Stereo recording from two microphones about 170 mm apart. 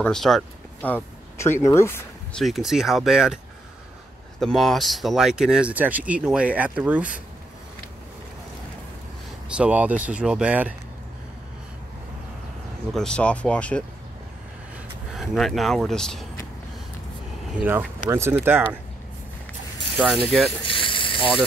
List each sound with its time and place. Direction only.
0.0 s speech: centre (ahead or behind)
0.8 s speech: 10° left (ahead or behind)
2.3 s speech: centre (ahead or behind)
4.4 s speech: centre (ahead or behind)
9.6 s speech: 10° right (ahead or behind)
12.9 s speech: 5° left (ahead or behind)
15.1 s speech: centre (ahead or behind)
17.6 s speech: 10° right (ahead or behind)
20.0 s speech: centre (ahead or behind)
20.6 s a sound: 30° left (ahead or behind)